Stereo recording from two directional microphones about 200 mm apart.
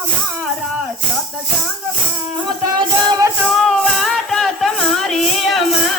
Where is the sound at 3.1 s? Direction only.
15° right (ahead or behind).